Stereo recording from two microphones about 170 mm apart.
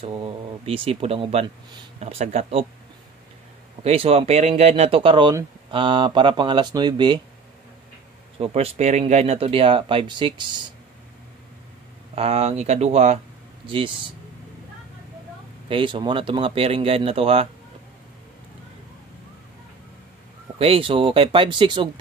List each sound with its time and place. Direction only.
0.0 s speech: 35° right (ahead or behind)
3.8 s speech: 35° right (ahead or behind)
8.4 s speech: 40° right (ahead or behind)
12.2 s speech: 35° right (ahead or behind)
15.7 s speech: 30° right (ahead or behind)
20.5 s speech: 35° right (ahead or behind)